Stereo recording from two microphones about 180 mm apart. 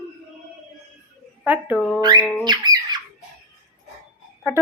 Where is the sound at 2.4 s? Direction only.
25° right (ahead or behind).